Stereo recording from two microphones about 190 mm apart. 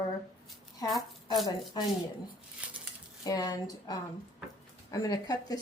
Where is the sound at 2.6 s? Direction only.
5° right (ahead or behind).